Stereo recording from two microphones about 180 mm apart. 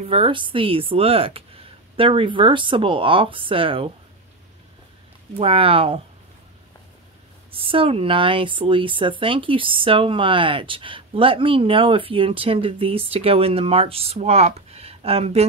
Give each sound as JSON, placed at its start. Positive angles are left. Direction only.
{"t": 0.0, "sound": "speech", "side_deg": -30}
{"t": 5.4, "sound": "speech", "side_deg": -30}
{"t": 7.5, "sound": "speech", "side_deg": -30}